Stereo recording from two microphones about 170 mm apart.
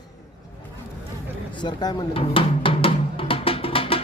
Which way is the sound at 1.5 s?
25° left (ahead or behind).